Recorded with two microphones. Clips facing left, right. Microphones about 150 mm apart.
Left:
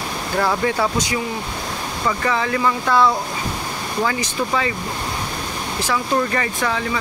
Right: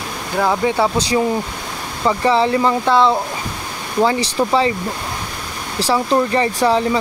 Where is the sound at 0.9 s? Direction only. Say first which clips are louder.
Right 6 dB; 30° right (ahead or behind).